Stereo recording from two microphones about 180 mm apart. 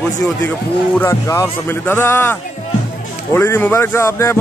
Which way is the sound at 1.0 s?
15° left (ahead or behind).